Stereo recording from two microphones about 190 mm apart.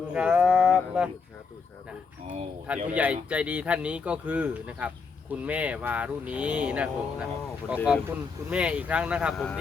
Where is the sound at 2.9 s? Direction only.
5° right (ahead or behind).